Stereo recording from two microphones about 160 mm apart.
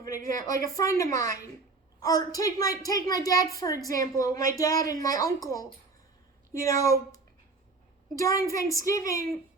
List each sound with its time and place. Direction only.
0.0 s a woman's voice: 20° left (ahead or behind)